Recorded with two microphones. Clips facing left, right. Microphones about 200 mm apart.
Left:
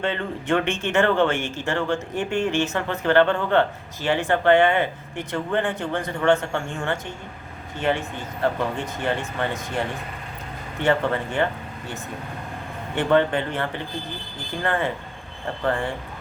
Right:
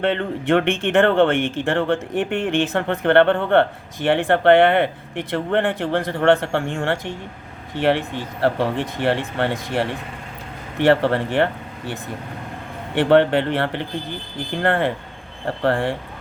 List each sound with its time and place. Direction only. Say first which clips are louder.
0.0 s speech: right 5 dB; 60° right (ahead or behind)
10.8 s speech: right 5 dB; 70° right (ahead or behind)
13.0 s speech: right 5 dB; 65° right (ahead or behind)